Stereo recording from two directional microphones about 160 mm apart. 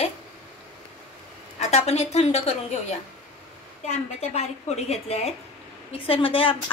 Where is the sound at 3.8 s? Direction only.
40° left (ahead or behind).